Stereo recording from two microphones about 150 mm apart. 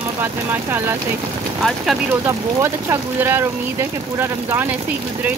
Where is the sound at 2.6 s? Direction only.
15° right (ahead or behind).